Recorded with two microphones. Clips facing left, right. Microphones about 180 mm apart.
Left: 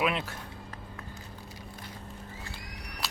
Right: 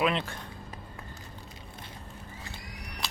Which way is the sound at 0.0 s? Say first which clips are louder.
Right 2 dB; 5° left (ahead or behind).